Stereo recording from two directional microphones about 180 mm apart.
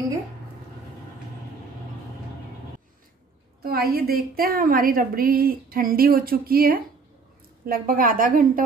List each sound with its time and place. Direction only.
3.6 s a woman's voice: 55° right (ahead or behind)